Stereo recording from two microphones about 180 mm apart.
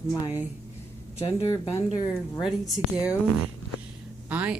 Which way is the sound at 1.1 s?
15° left (ahead or behind).